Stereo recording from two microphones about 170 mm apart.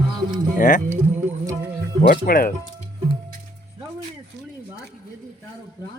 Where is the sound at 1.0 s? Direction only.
10° right (ahead or behind).